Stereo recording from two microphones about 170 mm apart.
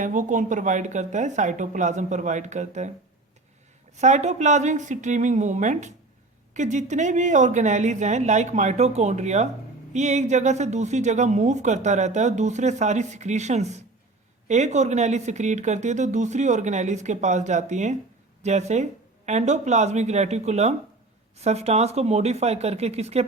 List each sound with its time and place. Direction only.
0.0 s speech: 50° right (ahead or behind)
3.9 s speech: 45° right (ahead or behind)